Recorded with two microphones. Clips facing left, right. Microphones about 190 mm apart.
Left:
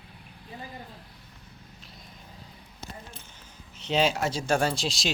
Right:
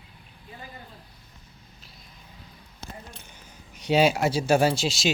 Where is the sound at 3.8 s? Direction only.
10° right (ahead or behind).